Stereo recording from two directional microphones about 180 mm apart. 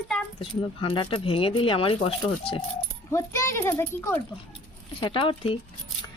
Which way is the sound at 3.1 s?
15° left (ahead or behind).